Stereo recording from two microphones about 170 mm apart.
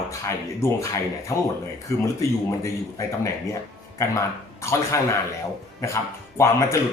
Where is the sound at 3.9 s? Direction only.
20° left (ahead or behind).